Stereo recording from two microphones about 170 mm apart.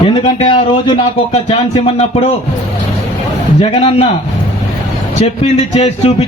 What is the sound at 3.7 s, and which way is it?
Speech, 35° left (ahead or behind).